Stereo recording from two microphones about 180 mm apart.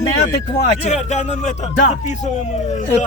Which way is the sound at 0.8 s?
40° left (ahead or behind).